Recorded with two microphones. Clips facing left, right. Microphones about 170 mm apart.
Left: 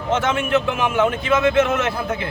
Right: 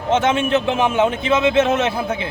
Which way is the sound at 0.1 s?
20° right (ahead or behind).